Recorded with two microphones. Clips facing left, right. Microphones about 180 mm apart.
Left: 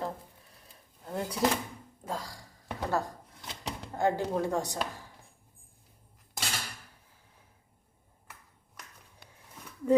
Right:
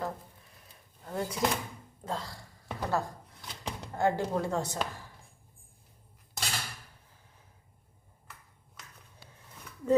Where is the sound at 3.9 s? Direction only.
15° left (ahead or behind).